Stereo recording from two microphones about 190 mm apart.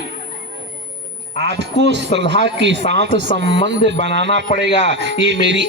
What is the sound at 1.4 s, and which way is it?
A man's voice, 65° right (ahead or behind).